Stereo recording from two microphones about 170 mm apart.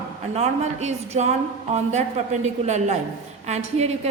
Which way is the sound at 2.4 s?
40° right (ahead or behind).